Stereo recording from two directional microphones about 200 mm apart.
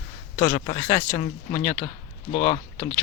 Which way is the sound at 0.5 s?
25° left (ahead or behind).